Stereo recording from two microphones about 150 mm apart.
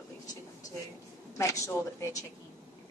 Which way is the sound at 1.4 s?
20° left (ahead or behind).